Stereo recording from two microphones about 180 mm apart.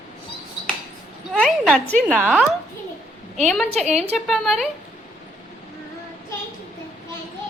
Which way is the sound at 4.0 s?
Centre (ahead or behind).